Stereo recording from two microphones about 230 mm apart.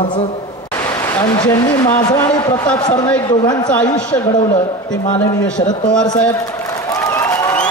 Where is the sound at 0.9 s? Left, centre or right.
Centre.